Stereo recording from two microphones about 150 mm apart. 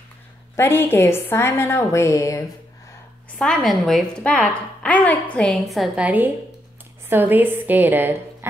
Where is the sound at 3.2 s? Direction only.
5° left (ahead or behind).